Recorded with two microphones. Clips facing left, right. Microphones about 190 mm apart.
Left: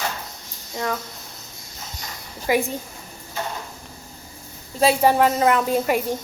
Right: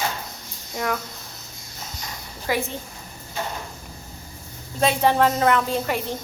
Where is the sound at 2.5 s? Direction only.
15° left (ahead or behind).